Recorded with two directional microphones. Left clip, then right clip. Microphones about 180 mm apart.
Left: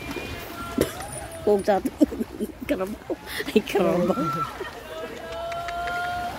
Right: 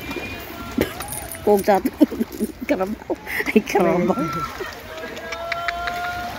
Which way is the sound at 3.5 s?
15° left (ahead or behind).